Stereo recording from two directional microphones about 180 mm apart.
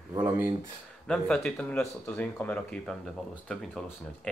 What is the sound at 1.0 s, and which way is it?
Speech, 5° left (ahead or behind).